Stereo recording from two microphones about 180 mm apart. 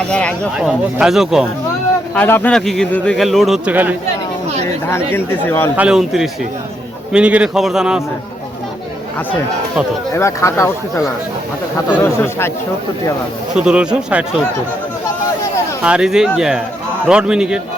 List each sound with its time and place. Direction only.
0.1 s speech: 5° left (ahead or behind)
2.1 s speech: 10° left (ahead or behind); by 3.9 s 10° right (ahead or behind)
4.9 s speech: 15° left (ahead or behind)
5.7 s speech: 5° right (ahead or behind)
10.2 s speech: 15° left (ahead or behind)
13.6 s speech: 5° right (ahead or behind)
15.8 s speech: 5° right (ahead or behind)